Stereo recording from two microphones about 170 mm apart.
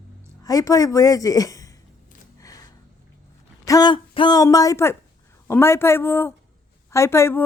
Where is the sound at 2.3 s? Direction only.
20° left (ahead or behind).